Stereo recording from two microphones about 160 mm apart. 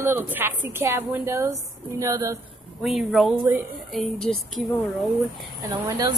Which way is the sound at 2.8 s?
Centre (ahead or behind).